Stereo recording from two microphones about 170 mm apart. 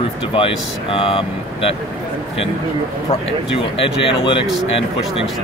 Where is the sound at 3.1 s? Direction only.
35° left (ahead or behind).